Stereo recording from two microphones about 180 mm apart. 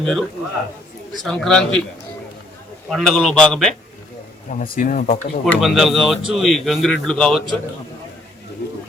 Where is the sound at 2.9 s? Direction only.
Centre (ahead or behind).